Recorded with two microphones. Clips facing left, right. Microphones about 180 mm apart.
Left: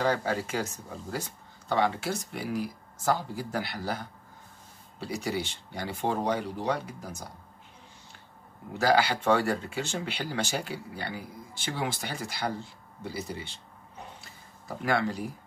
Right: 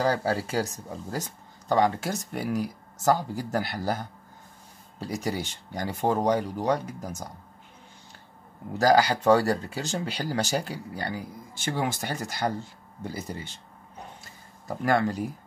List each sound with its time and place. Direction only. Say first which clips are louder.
0.0 s speech: right 2 dB; 35° right (ahead or behind)
8.7 s speech: right 4 dB; 40° right (ahead or behind)
14.9 s speech: right 4 dB; 45° right (ahead or behind)